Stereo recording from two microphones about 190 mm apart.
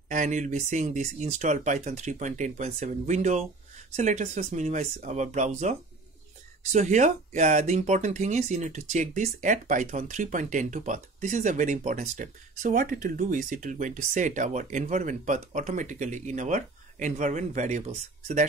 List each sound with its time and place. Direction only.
0.1 s speech: 40° right (ahead or behind)